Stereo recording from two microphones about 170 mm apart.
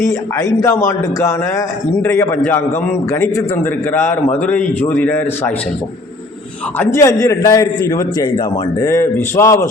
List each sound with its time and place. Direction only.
0.0 s a man's voice: 20° left (ahead or behind)
6.7 s a man's voice: 15° left (ahead or behind)